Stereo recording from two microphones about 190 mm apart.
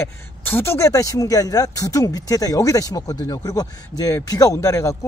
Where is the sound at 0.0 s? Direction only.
10° left (ahead or behind).